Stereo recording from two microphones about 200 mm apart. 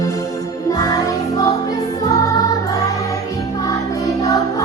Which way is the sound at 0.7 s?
20° left (ahead or behind).